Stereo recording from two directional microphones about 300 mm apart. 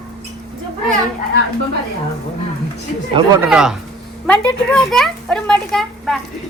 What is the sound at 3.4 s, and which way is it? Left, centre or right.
Speech, centre.